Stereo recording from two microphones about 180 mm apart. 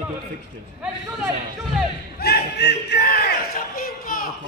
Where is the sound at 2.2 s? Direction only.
65° left (ahead or behind).